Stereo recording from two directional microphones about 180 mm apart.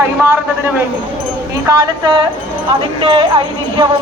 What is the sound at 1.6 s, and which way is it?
Speech, 20° right (ahead or behind).